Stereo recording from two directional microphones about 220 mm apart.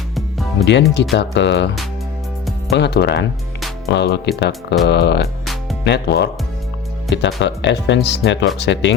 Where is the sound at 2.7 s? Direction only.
50° left (ahead or behind).